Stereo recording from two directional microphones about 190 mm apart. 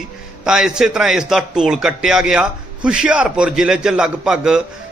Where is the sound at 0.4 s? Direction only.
5° right (ahead or behind).